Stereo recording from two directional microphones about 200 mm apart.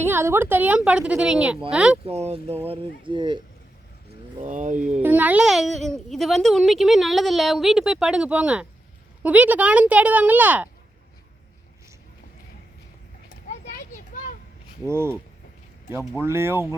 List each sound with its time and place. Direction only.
0.0 s a woman's voice: 10° right (ahead or behind)
2.0 s speech: 30° right (ahead or behind)
4.4 s speech: 40° right (ahead or behind)
5.0 s a child's voice: 10° right (ahead or behind)
13.5 s a sound: 40° left (ahead or behind)
14.8 s a woman's voice: 10° right (ahead or behind)